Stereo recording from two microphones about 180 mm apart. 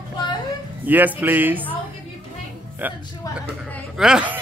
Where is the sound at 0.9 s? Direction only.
10° right (ahead or behind).